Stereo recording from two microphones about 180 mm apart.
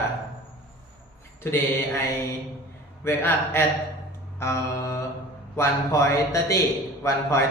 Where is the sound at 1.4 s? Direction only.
15° left (ahead or behind).